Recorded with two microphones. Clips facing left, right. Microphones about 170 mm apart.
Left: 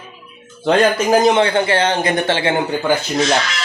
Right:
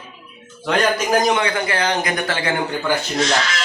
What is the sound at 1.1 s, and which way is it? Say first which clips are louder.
A man's voice: left 6 dB; 30° left (ahead or behind).